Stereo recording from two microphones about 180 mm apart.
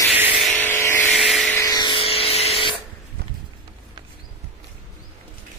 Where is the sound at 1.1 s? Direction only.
Centre (ahead or behind).